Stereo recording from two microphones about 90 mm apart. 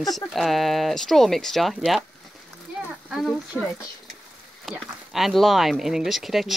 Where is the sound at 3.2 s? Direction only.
5° left (ahead or behind).